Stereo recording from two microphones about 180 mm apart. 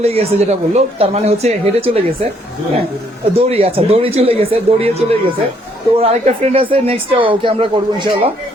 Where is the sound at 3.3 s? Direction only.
35° right (ahead or behind).